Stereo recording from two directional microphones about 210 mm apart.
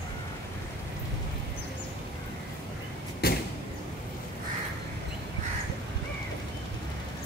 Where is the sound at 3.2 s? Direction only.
50° left (ahead or behind).